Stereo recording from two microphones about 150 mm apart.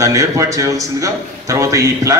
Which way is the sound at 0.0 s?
20° right (ahead or behind).